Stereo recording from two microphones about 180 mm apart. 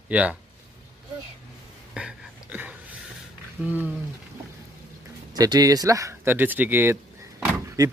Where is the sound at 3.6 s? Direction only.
10° right (ahead or behind).